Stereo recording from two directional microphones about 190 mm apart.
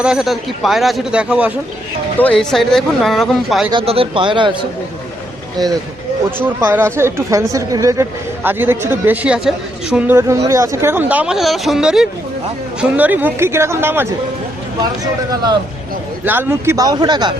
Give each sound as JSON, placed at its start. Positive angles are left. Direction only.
{"t": 0.0, "sound": "speech", "side_deg": -5}
{"t": 2.1, "sound": "speech", "side_deg": 5}
{"t": 3.7, "sound": "speech", "side_deg": -30}
{"t": 6.3, "sound": "a woman's voice", "side_deg": -10}
{"t": 16.2, "sound": "a woman's voice", "side_deg": -10}